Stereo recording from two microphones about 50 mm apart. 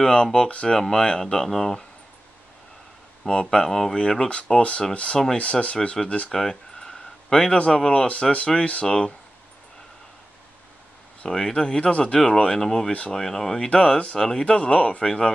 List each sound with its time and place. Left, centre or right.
0.0 s speech: centre
3.3 s speech: centre
4.5 s speech: left
6.3 s a sound: centre
7.5 s speech: centre
11.2 s speech: centre